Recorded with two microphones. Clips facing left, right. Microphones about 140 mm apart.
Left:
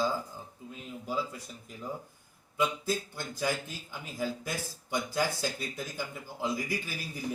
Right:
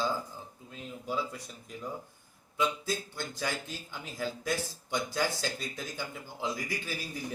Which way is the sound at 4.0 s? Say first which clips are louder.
Left 1 dB; 5° left (ahead or behind).